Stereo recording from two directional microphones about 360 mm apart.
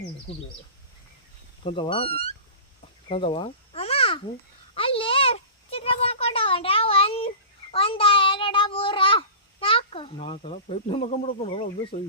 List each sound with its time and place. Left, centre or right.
1.6 s speech: centre
3.1 s a sound: centre
7.7 s a child's voice: centre